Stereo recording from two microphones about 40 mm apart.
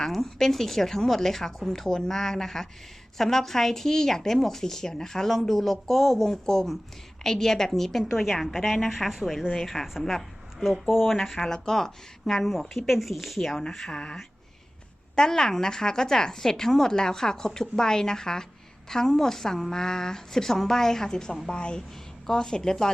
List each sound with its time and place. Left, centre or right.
0.1 s a woman's voice: centre
11.5 s a woman's voice: centre
15.1 s a woman's voice: centre